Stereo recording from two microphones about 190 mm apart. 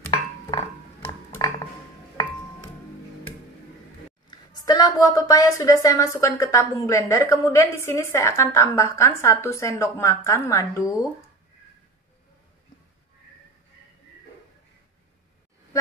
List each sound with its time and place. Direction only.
0.5 s music: 30° left (ahead or behind)
4.3 s a woman's voice: 20° left (ahead or behind)